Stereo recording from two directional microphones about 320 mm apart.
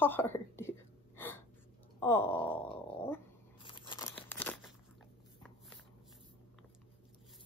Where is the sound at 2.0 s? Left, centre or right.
Centre.